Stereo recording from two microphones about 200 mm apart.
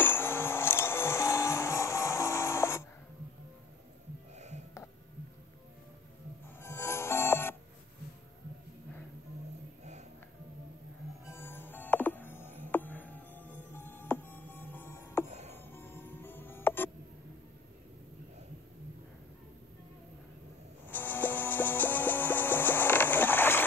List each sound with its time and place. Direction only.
0.0 s music: 10° left (ahead or behind)
6.6 s music: 10° left (ahead or behind)
11.2 s music: 10° left (ahead or behind)
15.2 s music: 35° right (ahead or behind)
15.5 s music: 10° left (ahead or behind)
20.9 s music: 10° left (ahead or behind)